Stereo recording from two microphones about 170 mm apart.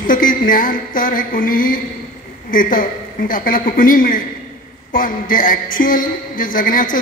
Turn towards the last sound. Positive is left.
turn(degrees=55)  # may be behind; listen again after turning